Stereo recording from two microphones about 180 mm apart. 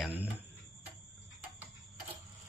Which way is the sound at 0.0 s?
10° right (ahead or behind).